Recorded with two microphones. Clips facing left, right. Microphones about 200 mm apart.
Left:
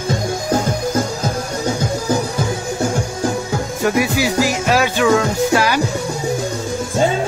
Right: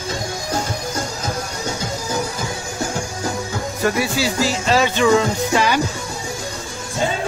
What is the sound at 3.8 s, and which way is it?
Music, 15° left (ahead or behind).